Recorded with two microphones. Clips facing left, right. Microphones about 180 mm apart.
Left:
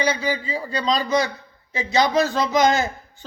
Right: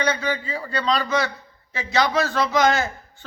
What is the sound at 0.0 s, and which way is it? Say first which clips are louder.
A man's voice: left 1 dB; 10° left (ahead or behind).